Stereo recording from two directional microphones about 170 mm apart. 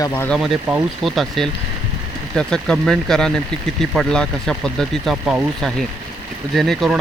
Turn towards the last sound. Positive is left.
turn(degrees=0)  # may be behind; listen again after turning